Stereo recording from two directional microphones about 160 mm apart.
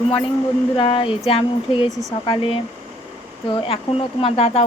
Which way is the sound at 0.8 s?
35° left (ahead or behind).